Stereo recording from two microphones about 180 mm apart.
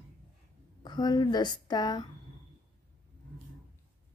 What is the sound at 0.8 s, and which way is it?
A woman's voice, 20° left (ahead or behind).